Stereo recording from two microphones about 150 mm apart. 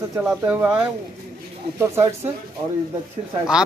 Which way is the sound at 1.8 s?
20° right (ahead or behind).